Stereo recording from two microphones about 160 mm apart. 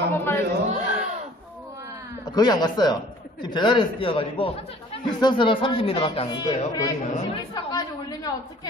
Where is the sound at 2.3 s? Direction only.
25° left (ahead or behind).